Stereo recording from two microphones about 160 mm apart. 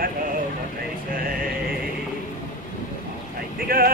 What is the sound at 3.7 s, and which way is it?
Speech, 65° right (ahead or behind).